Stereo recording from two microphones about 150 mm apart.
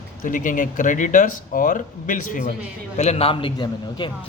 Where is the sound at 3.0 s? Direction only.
45° left (ahead or behind).